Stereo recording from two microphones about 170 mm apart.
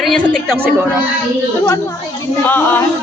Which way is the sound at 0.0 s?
5° left (ahead or behind).